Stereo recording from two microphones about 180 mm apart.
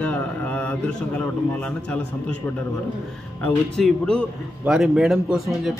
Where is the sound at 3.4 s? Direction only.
5° left (ahead or behind).